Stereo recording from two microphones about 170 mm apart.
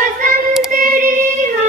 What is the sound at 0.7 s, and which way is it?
Female singing, 55° right (ahead or behind).